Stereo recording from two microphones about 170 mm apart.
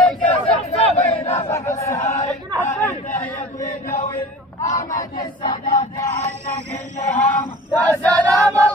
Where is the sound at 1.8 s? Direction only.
20° left (ahead or behind).